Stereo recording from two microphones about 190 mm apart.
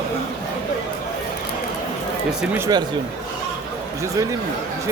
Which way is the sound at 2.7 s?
20° right (ahead or behind).